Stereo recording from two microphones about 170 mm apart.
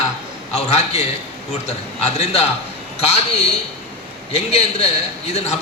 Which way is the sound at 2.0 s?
40° left (ahead or behind).